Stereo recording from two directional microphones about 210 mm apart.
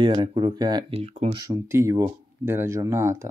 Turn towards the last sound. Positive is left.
turn(degrees=-10)  # may be behind; listen again after turning